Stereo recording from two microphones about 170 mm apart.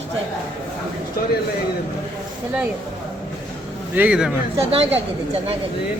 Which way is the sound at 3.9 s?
5° right (ahead or behind).